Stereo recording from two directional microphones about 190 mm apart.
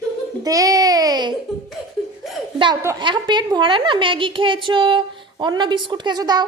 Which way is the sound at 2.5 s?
25° right (ahead or behind).